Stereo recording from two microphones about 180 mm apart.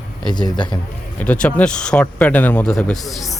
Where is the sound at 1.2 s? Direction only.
5° left (ahead or behind).